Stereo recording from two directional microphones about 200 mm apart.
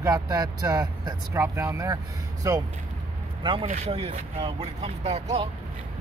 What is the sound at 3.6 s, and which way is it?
Speech, 30° right (ahead or behind).